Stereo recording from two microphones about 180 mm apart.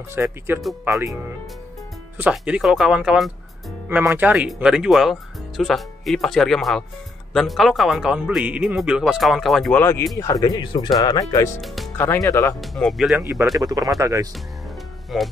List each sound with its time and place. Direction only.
0.1 s speech: 10° right (ahead or behind)
2.1 s speech: 10° right (ahead or behind); by 11.6 s 20° left (ahead or behind)
11.6 s speech: centre (ahead or behind)
12.0 s speech: 15° left (ahead or behind)
12.5 s speech: centre (ahead or behind)
13.6 s speech: 20° right (ahead or behind)
15.1 s speech: centre (ahead or behind)